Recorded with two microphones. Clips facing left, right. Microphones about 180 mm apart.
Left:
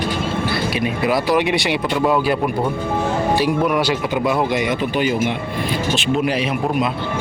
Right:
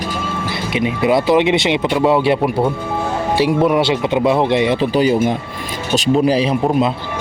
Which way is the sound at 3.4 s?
25° right (ahead or behind).